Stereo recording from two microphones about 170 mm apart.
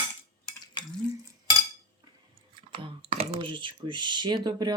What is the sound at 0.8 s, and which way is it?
Stir, 25° left (ahead or behind).